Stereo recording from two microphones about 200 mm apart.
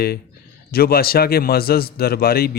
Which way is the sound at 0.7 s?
50° left (ahead or behind).